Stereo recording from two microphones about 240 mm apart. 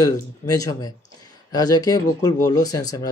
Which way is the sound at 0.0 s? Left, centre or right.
Centre.